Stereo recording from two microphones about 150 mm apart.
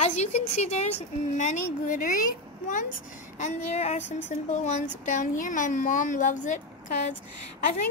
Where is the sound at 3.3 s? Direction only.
50° left (ahead or behind).